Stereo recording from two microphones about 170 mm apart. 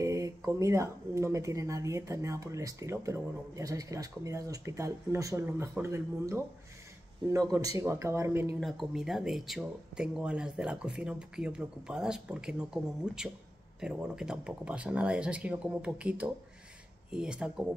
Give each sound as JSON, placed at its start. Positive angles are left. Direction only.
{"t": 0.0, "sound": "speech", "side_deg": -20}
{"t": 8.5, "sound": "speech", "side_deg": 0}